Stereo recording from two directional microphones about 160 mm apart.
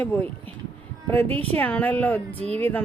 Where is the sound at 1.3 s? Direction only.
35° right (ahead or behind).